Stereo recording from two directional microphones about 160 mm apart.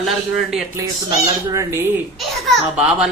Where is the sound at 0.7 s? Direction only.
20° right (ahead or behind).